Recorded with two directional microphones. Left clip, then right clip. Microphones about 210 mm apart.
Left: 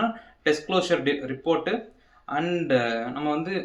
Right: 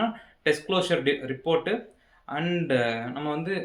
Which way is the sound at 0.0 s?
5° right (ahead or behind).